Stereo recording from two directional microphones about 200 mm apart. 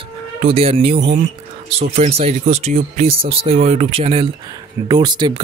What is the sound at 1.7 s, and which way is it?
Speech, 30° right (ahead or behind).